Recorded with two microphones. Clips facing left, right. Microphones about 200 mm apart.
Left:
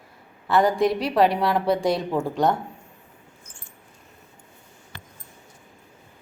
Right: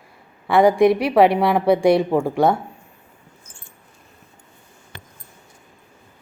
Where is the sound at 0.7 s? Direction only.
10° right (ahead or behind).